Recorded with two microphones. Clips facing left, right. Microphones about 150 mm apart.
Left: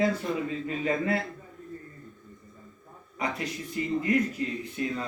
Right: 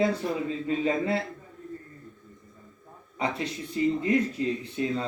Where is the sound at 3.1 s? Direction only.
30° right (ahead or behind).